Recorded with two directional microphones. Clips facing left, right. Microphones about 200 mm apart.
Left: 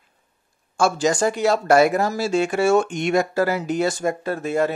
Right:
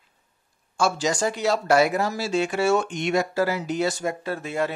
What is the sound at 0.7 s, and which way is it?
Speech, 50° left (ahead or behind).